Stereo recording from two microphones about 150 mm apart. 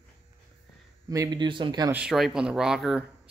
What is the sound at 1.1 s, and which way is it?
Speech, 25° right (ahead or behind).